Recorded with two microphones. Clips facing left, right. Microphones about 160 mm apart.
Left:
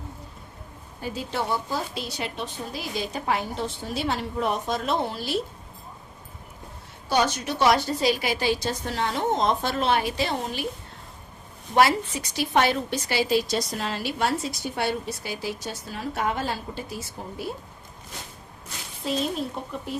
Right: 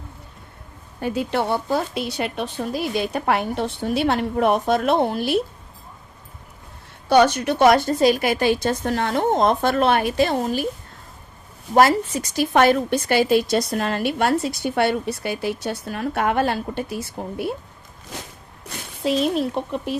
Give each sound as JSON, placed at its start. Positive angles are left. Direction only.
{"t": 1.0, "sound": "a woman's voice", "side_deg": -65}
{"t": 7.1, "sound": "a woman's voice", "side_deg": -65}
{"t": 11.7, "sound": "a woman's voice", "side_deg": -45}
{"t": 18.7, "sound": "speech", "side_deg": -75}